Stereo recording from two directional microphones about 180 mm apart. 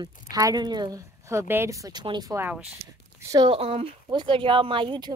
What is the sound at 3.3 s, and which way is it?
Speech, 25° right (ahead or behind).